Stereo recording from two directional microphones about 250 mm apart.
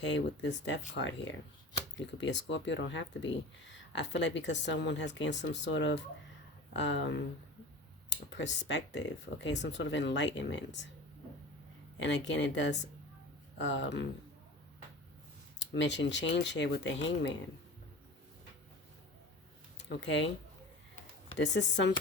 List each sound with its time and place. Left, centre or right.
0.0 s speech: left
11.9 s speech: left
15.5 s speech: left
19.9 s speech: left
21.3 s speech: left